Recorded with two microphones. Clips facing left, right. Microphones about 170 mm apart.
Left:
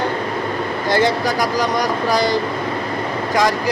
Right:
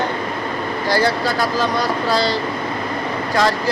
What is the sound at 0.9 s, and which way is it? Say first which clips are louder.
Speech: left 1 dB; 20° left (ahead or behind).